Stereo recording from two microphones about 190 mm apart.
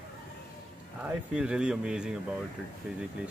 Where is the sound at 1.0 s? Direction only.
5° right (ahead or behind).